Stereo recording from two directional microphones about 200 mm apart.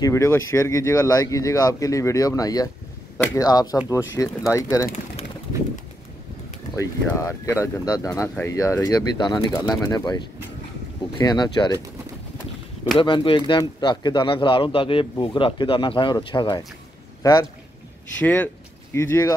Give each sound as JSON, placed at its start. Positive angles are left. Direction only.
{"t": 0.0, "sound": "speech", "side_deg": 15}
{"t": 6.8, "sound": "speech", "side_deg": 15}
{"t": 12.9, "sound": "a man's voice", "side_deg": 25}